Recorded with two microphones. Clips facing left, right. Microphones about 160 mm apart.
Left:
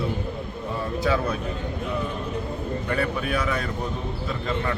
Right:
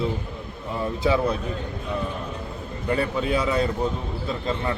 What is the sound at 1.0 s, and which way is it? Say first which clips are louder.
Speech: right 3 dB; 25° right (ahead or behind).